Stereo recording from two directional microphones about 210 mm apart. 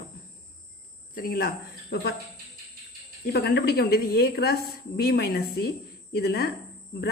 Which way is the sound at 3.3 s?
50° left (ahead or behind).